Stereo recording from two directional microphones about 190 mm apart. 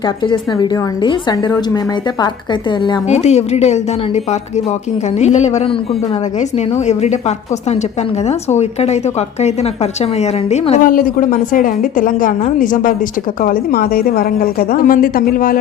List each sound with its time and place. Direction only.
0.0 s a woman's voice: 25° left (ahead or behind)
3.1 s a woman's voice: 35° left (ahead or behind)